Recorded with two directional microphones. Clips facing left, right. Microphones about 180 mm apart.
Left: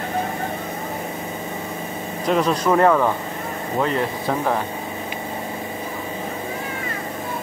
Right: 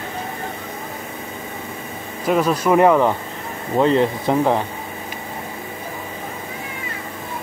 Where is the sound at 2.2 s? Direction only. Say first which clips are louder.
Right 1 dB; 5° right (ahead or behind); by 4.6 s 20° right (ahead or behind).